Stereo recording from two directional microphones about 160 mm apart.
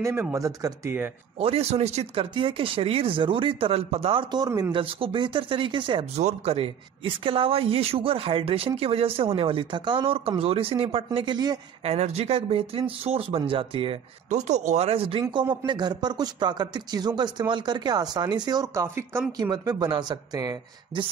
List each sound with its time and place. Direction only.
0.0 s a man's voice: 15° right (ahead or behind)
1.4 s speech: 40° right (ahead or behind)
6.1 s a man's voice: 40° right (ahead or behind)
11.8 s speech: 40° right (ahead or behind)
14.3 s a man's voice: 45° right (ahead or behind); by 21.1 s 25° right (ahead or behind)